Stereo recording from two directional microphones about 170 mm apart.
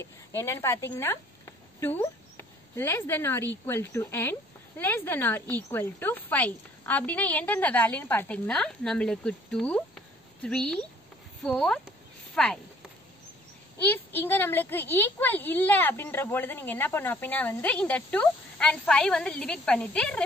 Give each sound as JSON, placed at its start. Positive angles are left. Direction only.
{"t": 0.0, "sound": "a woman's voice", "side_deg": 15}
{"t": 13.7, "sound": "a woman's voice", "side_deg": 10}